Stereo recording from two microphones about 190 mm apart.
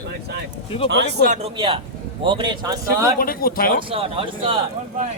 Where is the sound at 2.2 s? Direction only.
25° right (ahead or behind).